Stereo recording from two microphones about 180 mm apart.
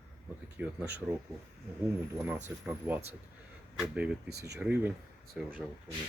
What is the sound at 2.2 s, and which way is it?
Speech, 15° right (ahead or behind).